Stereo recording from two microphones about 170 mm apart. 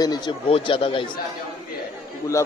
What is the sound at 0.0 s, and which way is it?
Speech, 25° left (ahead or behind).